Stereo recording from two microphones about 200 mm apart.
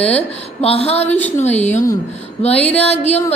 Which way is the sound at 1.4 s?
35° left (ahead or behind).